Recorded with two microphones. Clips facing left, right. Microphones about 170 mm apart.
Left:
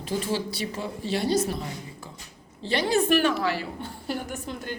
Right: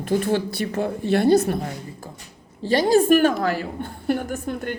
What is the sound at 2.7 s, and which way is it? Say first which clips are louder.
A woman's voice: right 6 dB; 40° right (ahead or behind).